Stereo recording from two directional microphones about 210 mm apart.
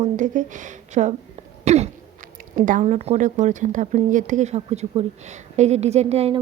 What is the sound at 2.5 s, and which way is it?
A woman's voice, 40° right (ahead or behind).